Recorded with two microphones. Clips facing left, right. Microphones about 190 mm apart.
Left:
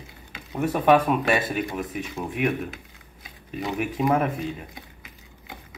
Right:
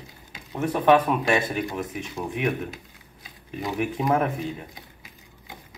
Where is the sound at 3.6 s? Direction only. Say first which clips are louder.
Left 1 dB; centre (ahead or behind).